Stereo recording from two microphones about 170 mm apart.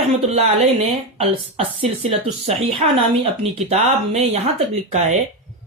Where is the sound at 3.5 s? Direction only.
40° right (ahead or behind).